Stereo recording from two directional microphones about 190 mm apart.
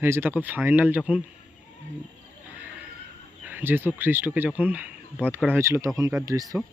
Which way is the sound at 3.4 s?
10° right (ahead or behind).